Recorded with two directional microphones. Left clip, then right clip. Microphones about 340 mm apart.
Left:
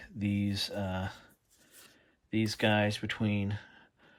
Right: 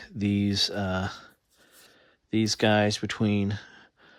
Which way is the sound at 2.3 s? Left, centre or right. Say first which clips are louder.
Right 6 dB; centre.